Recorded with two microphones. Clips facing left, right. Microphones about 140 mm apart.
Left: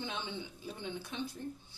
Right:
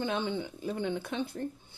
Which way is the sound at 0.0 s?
50° right (ahead or behind).